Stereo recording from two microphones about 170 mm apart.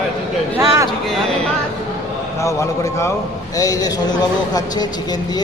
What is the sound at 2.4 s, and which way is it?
A man's voice, 20° left (ahead or behind).